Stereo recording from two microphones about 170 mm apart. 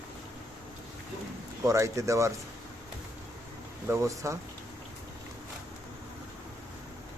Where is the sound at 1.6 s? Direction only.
20° right (ahead or behind).